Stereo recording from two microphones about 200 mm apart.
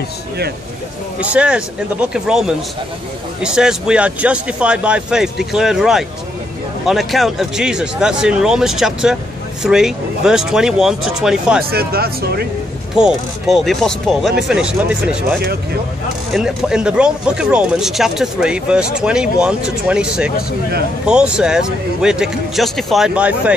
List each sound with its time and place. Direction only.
1.2 s speech: 5° right (ahead or behind)
11.7 s speech: 50° right (ahead or behind)
12.9 s speech: centre (ahead or behind)
16.3 s speech: centre (ahead or behind)